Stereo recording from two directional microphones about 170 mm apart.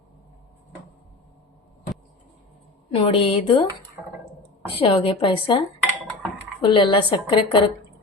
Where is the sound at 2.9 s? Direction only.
30° left (ahead or behind).